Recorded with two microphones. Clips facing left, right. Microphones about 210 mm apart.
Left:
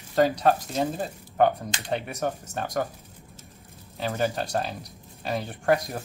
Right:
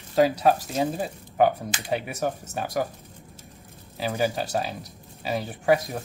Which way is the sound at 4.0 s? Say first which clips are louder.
Right 1 dB; 5° right (ahead or behind).